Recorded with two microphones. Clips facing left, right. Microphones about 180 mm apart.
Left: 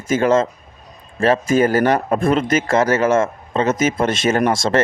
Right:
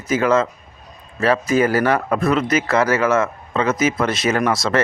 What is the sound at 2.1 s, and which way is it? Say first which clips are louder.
Speech: left 1 dB; 25° left (ahead or behind).